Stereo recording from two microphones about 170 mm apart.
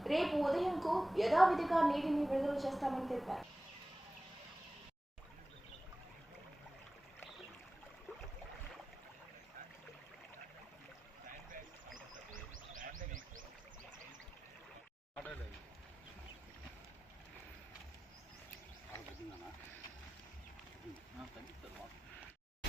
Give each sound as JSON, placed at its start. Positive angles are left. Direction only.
{"t": 0.0, "sound": "a woman's voice", "side_deg": 0}
{"t": 11.9, "sound": "wild animals", "side_deg": -50}
{"t": 15.1, "sound": "a sound", "side_deg": 10}